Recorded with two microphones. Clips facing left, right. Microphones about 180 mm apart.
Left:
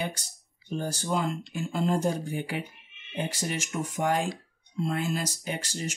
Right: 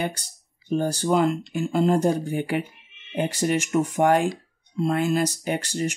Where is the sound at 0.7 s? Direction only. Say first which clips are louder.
Right 8 dB; 65° right (ahead or behind).